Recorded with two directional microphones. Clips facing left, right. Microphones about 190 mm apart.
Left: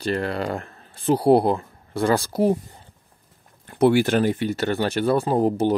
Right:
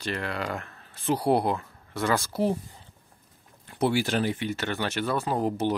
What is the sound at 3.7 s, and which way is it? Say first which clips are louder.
Speech: left 8 dB; 55° left (ahead or behind).